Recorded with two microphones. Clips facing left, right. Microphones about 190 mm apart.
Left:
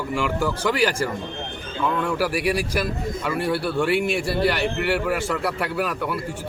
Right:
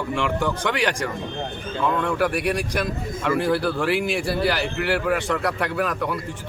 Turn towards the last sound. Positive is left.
turn(degrees=5)  # may be behind; listen again after turning